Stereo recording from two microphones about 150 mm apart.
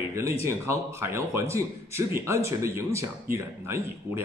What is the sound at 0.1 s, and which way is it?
Speech, 20° right (ahead or behind).